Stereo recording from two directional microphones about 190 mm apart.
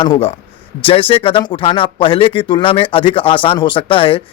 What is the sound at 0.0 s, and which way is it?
Speech, 30° left (ahead or behind).